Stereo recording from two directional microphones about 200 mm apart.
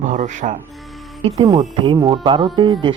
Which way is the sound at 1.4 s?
20° right (ahead or behind).